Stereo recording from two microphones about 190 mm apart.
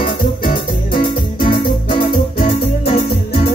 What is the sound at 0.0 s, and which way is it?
Music, 50° left (ahead or behind).